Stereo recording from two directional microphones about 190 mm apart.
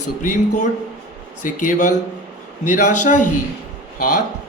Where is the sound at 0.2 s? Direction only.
40° left (ahead or behind).